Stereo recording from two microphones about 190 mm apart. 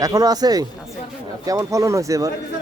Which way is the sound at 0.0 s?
20° right (ahead or behind).